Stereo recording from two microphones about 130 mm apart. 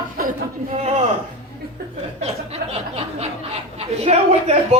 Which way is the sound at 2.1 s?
55° right (ahead or behind).